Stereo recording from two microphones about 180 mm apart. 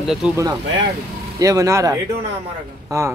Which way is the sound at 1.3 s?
20° right (ahead or behind).